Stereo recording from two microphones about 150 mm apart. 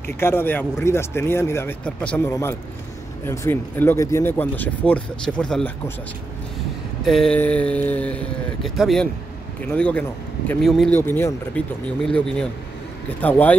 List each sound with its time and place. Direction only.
0.2 s speech: 15° left (ahead or behind)
7.1 s speech: centre (ahead or behind)
10.9 s speech: 15° left (ahead or behind)